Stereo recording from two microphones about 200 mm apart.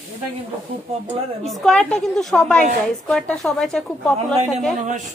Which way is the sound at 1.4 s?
Centre (ahead or behind).